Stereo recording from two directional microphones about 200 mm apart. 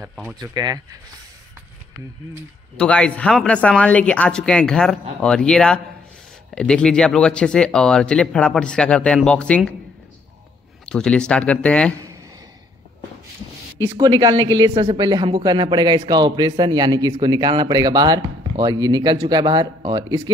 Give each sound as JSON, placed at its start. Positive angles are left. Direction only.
{"t": 0.0, "sound": "speech", "side_deg": -5}
{"t": 0.4, "sound": "a woman's voice", "side_deg": -20}
{"t": 2.8, "sound": "speech", "side_deg": 5}
{"t": 10.9, "sound": "speech", "side_deg": 5}
{"t": 13.8, "sound": "a woman's voice", "side_deg": -20}